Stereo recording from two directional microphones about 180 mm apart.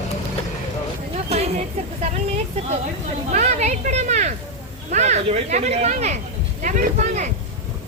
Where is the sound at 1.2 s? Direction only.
35° right (ahead or behind).